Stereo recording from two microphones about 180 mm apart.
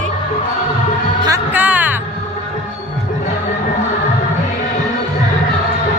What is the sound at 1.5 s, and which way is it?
Music, 10° right (ahead or behind).